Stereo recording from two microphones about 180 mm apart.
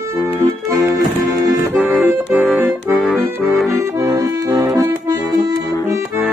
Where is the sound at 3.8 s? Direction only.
15° right (ahead or behind).